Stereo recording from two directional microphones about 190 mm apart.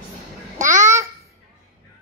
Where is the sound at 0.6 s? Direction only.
40° right (ahead or behind).